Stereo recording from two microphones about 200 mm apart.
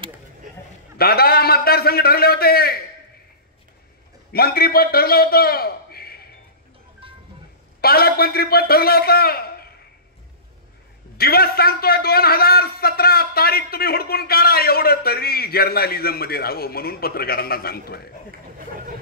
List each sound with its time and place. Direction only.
0.9 s a man's voice: 50° left (ahead or behind)
4.3 s a man's voice: 50° left (ahead or behind)
7.8 s a man's voice: 50° left (ahead or behind)
11.1 s a man's voice: 50° left (ahead or behind)